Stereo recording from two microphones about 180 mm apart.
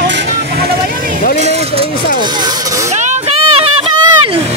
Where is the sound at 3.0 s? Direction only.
40° right (ahead or behind).